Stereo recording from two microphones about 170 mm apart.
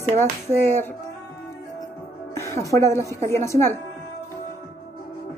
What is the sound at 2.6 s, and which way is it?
Speech, 15° left (ahead or behind).